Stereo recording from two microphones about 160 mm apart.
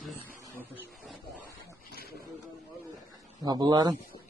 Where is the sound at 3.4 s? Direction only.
25° right (ahead or behind).